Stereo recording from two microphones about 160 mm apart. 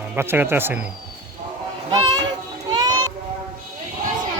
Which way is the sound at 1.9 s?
25° right (ahead or behind).